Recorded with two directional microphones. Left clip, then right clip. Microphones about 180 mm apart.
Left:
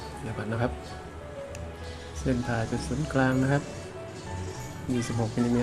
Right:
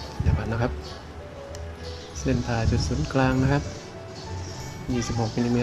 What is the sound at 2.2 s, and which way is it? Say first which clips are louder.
Speech: right 2 dB; centre (ahead or behind).